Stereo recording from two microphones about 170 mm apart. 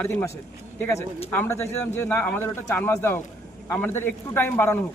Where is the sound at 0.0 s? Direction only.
15° left (ahead or behind).